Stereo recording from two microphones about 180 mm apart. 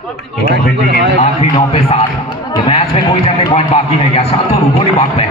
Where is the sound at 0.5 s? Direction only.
65° right (ahead or behind).